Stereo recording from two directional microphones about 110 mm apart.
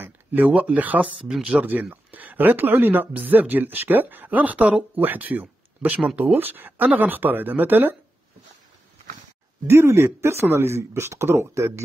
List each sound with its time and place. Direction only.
0.0 s speech: 15° right (ahead or behind)
9.7 s speech: 25° right (ahead or behind)